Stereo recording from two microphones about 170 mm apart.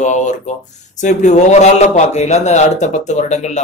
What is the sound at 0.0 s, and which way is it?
A man's voice, 45° left (ahead or behind).